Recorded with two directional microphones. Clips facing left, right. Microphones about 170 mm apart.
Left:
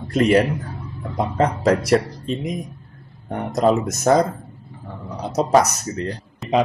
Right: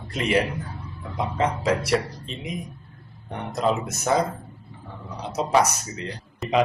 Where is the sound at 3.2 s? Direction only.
45° left (ahead or behind).